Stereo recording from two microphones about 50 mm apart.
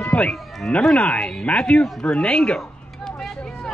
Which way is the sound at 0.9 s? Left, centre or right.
Left.